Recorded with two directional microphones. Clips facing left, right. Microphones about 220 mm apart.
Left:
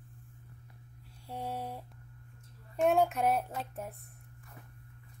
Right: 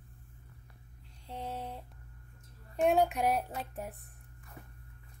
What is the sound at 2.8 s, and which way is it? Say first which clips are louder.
Speech: even; centre (ahead or behind).